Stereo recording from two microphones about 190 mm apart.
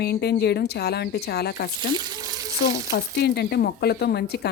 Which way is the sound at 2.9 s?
60° left (ahead or behind).